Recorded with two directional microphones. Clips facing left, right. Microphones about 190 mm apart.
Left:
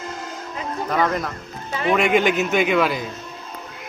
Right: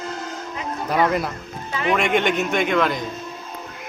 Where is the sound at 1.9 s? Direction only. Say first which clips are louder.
Left 2 dB; 5° left (ahead or behind).